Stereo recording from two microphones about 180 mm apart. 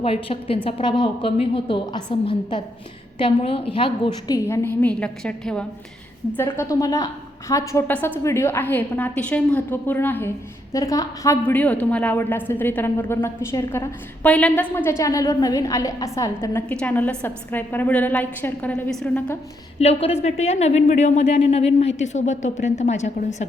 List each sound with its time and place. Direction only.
0.0 s a woman's voice: 30° left (ahead or behind)
4.4 s a woman's voice: 15° left (ahead or behind)
19.8 s a woman's voice: 35° left (ahead or behind)